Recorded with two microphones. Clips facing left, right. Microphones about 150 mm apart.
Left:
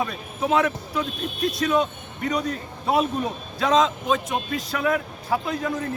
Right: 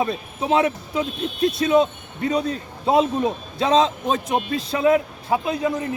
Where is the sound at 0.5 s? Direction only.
20° right (ahead or behind).